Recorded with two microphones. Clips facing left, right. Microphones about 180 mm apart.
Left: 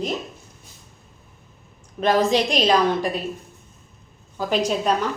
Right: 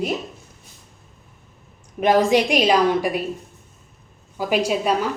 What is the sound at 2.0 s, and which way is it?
A woman's voice, 15° right (ahead or behind).